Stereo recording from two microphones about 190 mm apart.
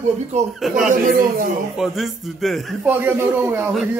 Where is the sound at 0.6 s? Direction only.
Centre (ahead or behind).